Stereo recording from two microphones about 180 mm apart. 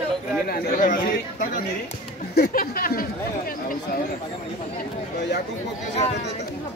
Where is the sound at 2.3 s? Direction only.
55° left (ahead or behind).